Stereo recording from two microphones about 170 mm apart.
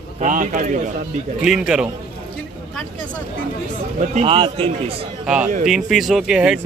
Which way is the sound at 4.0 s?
35° right (ahead or behind).